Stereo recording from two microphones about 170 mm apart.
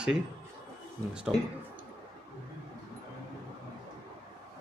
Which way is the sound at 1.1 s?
5° right (ahead or behind).